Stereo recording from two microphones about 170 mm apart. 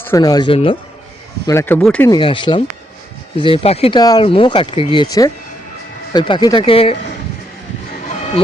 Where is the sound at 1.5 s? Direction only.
15° left (ahead or behind).